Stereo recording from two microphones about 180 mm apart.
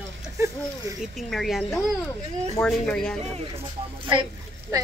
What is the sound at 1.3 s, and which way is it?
Speech, centre (ahead or behind).